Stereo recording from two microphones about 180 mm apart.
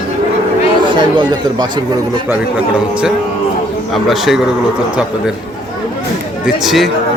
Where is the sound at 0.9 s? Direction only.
25° right (ahead or behind).